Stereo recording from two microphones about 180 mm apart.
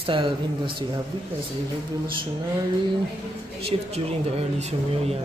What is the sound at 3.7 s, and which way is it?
Speech, 30° right (ahead or behind).